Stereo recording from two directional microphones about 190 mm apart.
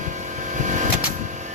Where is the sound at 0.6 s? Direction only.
40° right (ahead or behind).